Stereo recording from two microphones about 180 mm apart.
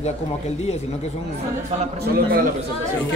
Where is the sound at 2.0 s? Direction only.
55° right (ahead or behind).